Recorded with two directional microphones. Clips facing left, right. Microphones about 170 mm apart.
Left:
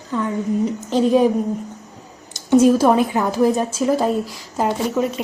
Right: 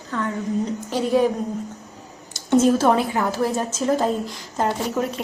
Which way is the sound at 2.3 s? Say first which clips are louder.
Left 4 dB; 10° left (ahead or behind).